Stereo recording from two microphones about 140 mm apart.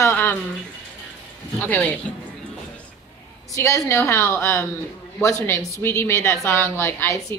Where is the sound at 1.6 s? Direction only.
10° left (ahead or behind).